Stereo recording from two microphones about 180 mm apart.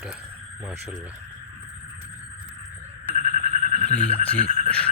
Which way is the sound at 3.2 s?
45° right (ahead or behind).